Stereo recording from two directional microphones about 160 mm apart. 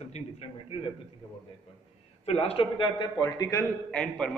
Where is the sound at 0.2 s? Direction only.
45° left (ahead or behind).